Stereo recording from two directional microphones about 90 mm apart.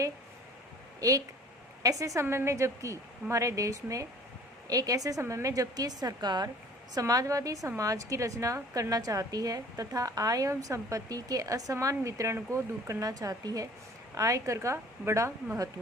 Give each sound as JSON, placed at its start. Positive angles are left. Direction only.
{"t": 1.8, "sound": "a woman's voice", "side_deg": -40}